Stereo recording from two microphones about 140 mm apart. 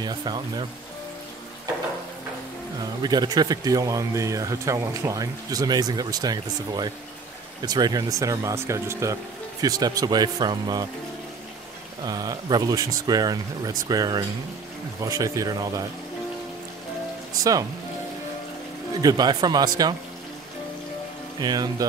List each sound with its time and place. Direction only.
0.0 s speech: 30° right (ahead or behind)
2.8 s speech: 30° right (ahead or behind)
12.0 s speech: 30° right (ahead or behind)
17.4 s speech: 25° right (ahead or behind)
18.9 s speech: 30° right (ahead or behind)
21.4 s speech: 30° right (ahead or behind)